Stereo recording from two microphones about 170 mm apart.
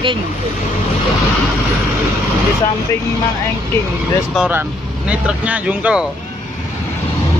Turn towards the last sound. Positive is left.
turn(degrees=-10)  # may be behind; listen again after turning